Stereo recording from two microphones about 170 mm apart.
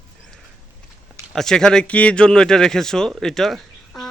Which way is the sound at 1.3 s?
5° left (ahead or behind).